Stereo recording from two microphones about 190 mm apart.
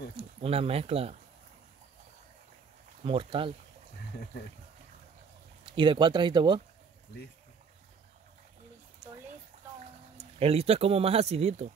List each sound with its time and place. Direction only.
0.1 s speech: 30° right (ahead or behind)
3.0 s speech: 25° right (ahead or behind)
5.7 s speech: 25° right (ahead or behind)
10.4 s speech: 30° right (ahead or behind)